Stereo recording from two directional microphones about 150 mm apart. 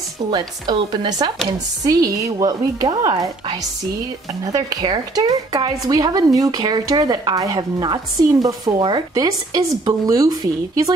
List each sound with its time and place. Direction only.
0.3 s speech: 30° right (ahead or behind)